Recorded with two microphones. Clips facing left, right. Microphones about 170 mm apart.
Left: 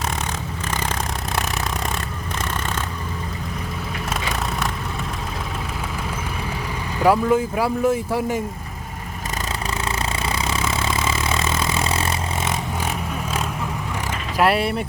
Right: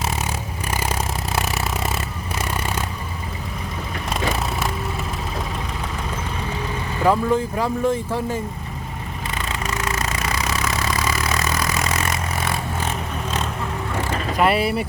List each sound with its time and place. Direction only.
0.7 s vehicle: 10° right (ahead or behind)
7.0 s speech: 10° left (ahead or behind)
9.6 s vehicle: 30° left (ahead or behind)
14.3 s speech: centre (ahead or behind)